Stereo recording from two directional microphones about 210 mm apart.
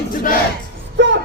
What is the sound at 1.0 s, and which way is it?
Music, 60° right (ahead or behind).